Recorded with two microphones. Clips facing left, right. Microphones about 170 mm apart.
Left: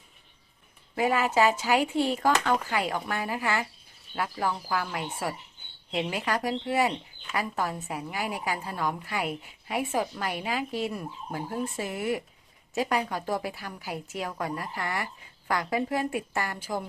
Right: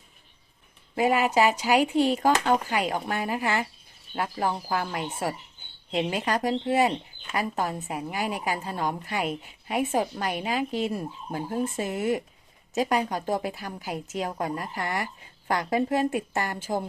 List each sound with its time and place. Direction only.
0.9 s a woman's voice: 20° right (ahead or behind)